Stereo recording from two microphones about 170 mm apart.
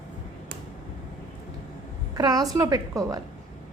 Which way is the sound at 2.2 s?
20° right (ahead or behind).